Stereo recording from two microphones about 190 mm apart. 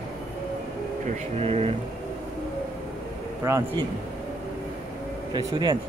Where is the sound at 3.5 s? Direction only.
15° right (ahead or behind).